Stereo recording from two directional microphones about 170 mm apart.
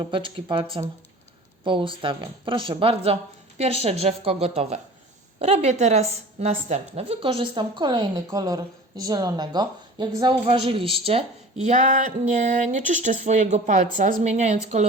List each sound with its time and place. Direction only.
0.0 s a woman's voice: 30° right (ahead or behind)